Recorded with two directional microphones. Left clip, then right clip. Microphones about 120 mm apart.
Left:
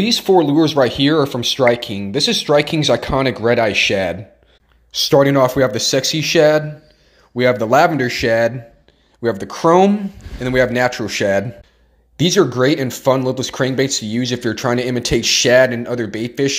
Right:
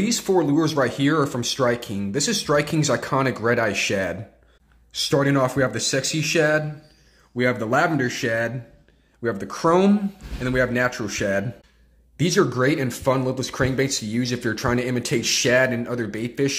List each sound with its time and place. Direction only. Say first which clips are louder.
0.0 s speech: left 8 dB; 25° left (ahead or behind)
12.2 s speech: left 6 dB; 20° left (ahead or behind)